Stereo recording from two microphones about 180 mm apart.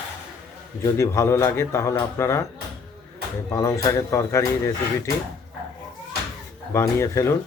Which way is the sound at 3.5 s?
15° left (ahead or behind).